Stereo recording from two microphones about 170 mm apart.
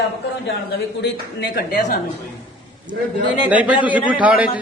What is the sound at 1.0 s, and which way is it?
Speech, 70° left (ahead or behind).